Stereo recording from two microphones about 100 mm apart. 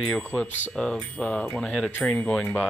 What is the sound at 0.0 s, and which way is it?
Speech, centre (ahead or behind).